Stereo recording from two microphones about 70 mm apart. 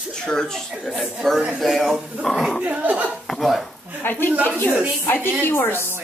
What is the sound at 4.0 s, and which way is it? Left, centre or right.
Speech, left.